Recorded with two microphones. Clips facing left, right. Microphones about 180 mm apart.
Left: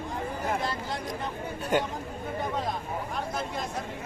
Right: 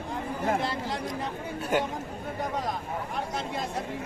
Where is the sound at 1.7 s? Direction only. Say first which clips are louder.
Even; 5° right (ahead or behind).